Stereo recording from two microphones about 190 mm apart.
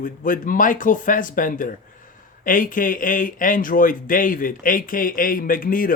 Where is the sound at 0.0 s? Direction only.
45° left (ahead or behind).